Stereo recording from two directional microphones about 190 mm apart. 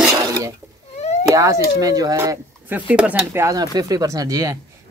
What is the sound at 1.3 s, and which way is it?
Speech, 15° right (ahead or behind).